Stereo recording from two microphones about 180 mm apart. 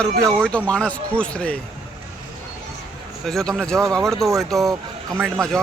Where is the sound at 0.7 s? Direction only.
5° left (ahead or behind).